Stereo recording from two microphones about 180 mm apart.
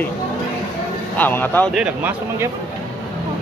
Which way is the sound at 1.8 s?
10° right (ahead or behind).